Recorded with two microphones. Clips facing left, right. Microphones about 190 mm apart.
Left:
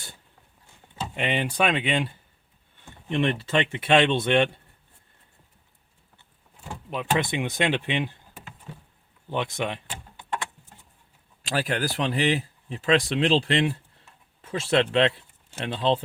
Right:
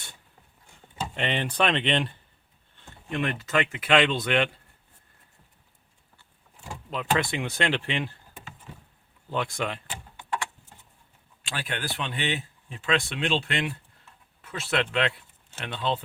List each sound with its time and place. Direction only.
1.1 s speech: 10° left (ahead or behind)
3.1 s speech: 30° left (ahead or behind)
6.9 s speech: 15° left (ahead or behind)
9.3 s speech: 20° left (ahead or behind)
11.4 s speech: 40° left (ahead or behind)